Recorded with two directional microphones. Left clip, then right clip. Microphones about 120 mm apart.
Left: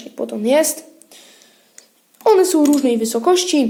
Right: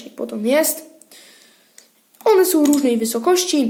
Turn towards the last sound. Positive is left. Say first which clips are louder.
# left 2 dB
turn(degrees=10)  # may be behind; listen again after turning